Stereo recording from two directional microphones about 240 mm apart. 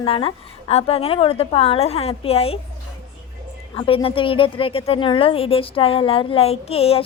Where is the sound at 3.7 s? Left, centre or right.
Left.